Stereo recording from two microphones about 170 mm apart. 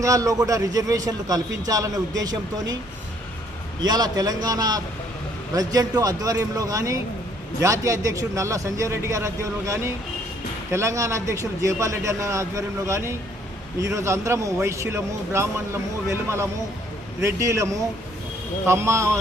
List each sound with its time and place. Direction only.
0.0 s a man's voice: 20° right (ahead or behind)
3.8 s a man's voice: 25° right (ahead or behind)